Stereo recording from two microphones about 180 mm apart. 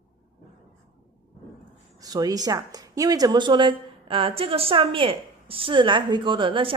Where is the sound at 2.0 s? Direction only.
20° right (ahead or behind).